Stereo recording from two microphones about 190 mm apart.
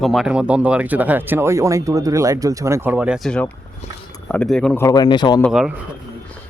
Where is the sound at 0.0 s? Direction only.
Centre (ahead or behind).